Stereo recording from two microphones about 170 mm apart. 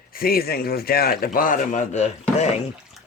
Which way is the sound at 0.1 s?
60° left (ahead or behind).